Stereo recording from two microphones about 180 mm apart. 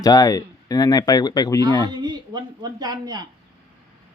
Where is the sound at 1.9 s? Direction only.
25° right (ahead or behind).